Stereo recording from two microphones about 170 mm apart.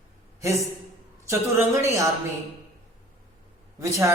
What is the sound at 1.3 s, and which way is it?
Speech, 15° right (ahead or behind).